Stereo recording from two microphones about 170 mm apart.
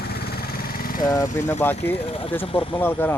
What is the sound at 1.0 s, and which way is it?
Speech, 20° left (ahead or behind).